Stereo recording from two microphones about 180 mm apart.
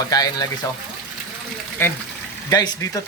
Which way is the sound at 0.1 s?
20° left (ahead or behind).